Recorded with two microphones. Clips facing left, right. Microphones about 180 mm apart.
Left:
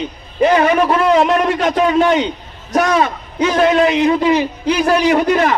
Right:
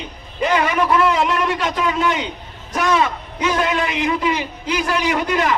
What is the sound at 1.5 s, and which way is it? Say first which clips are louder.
Speech: left 6 dB; 45° left (ahead or behind).